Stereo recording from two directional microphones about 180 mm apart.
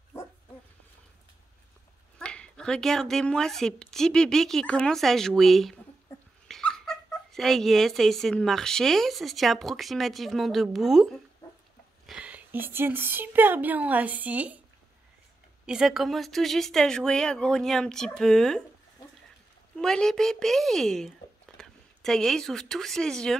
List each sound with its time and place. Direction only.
2.1 s speech: 5° left (ahead or behind)
6.1 s dog: 15° left (ahead or behind)
6.4 s speech: 5° left (ahead or behind)
15.6 s speech: 5° right (ahead or behind)
19.8 s speech: 5° left (ahead or behind)